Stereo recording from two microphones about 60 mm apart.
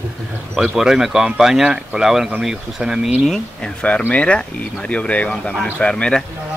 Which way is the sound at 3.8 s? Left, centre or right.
Left.